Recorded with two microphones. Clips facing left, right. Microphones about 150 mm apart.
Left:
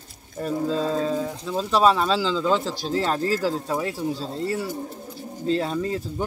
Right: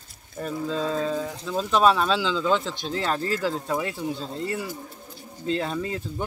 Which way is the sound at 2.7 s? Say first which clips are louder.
Left 3 dB; 40° left (ahead or behind).